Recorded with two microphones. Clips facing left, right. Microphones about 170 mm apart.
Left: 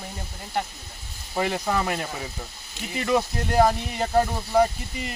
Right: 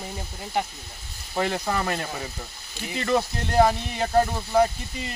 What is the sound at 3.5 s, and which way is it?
Speech, 5° left (ahead or behind).